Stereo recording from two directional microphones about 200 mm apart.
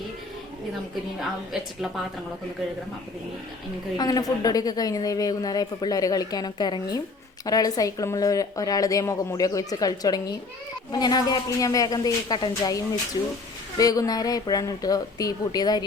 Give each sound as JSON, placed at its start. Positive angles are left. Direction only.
{"t": 3.9, "sound": "a woman's voice", "side_deg": 20}